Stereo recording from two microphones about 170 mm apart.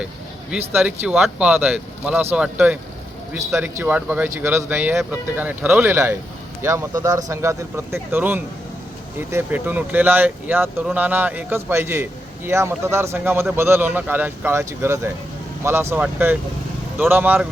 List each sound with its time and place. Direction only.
0.5 s speech: 5° right (ahead or behind)
3.8 s speech: 10° right (ahead or behind)